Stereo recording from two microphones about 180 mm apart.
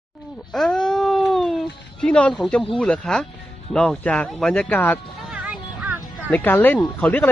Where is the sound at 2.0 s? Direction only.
5° left (ahead or behind).